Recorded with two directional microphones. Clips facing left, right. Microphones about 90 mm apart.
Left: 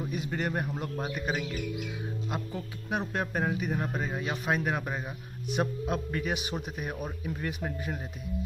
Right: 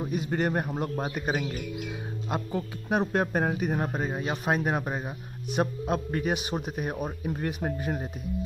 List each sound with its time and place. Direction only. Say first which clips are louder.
0.1 s a man's voice: right 6 dB; 40° right (ahead or behind)
3.0 s a man's voice: right 5 dB; 40° right (ahead or behind)
3.9 s a man's voice: right 3 dB; 35° right (ahead or behind)